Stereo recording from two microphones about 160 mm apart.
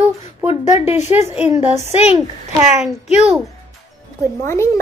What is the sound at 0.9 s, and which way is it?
A woman's voice, 15° right (ahead or behind).